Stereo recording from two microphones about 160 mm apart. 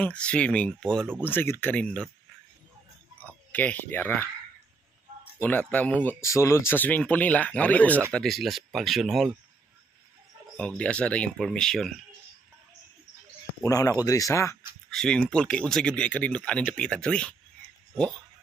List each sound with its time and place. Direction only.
0.0 s speech: 10° left (ahead or behind)
3.5 s speech: 10° left (ahead or behind)
5.4 s speech: 10° left (ahead or behind)
10.6 s speech: 5° left (ahead or behind)
13.6 s speech: 20° left (ahead or behind)
14.8 s speech: 5° left (ahead or behind)